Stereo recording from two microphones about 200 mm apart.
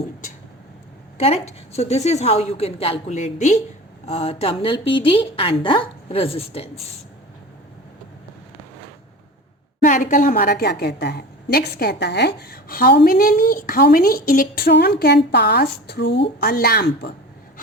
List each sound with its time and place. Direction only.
1.2 s a woman's voice: 30° left (ahead or behind)
9.8 s a woman's voice: 40° left (ahead or behind)